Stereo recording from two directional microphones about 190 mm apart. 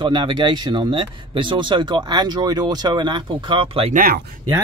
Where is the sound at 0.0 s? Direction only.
25° right (ahead or behind).